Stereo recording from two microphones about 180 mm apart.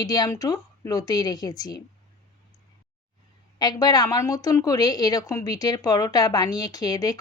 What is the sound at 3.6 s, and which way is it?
A woman's voice, 20° left (ahead or behind).